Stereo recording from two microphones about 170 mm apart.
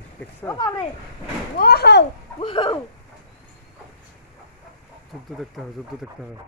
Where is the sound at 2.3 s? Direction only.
30° left (ahead or behind).